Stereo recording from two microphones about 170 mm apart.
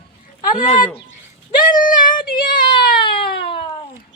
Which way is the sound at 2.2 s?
55° left (ahead or behind).